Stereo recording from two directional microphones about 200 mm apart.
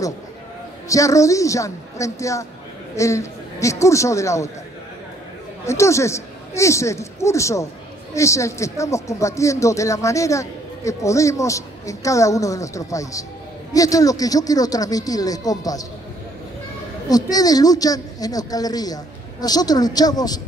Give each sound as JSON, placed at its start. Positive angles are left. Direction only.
{"t": 0.8, "sound": "speech", "side_deg": 15}
{"t": 5.7, "sound": "speech", "side_deg": 15}
{"t": 17.1, "sound": "a woman's voice", "side_deg": 20}